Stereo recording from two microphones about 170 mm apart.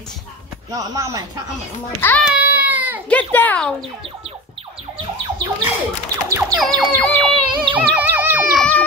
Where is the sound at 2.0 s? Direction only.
15° left (ahead or behind).